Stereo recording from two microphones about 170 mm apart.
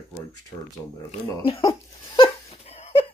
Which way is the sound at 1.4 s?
30° left (ahead or behind).